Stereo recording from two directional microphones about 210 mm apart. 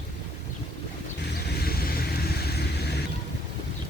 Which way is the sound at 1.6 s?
45° left (ahead or behind).